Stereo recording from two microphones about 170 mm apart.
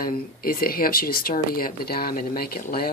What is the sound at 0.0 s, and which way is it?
Speech, 60° left (ahead or behind).